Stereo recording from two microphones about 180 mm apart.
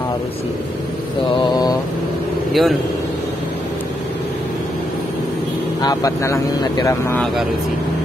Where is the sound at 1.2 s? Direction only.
25° left (ahead or behind).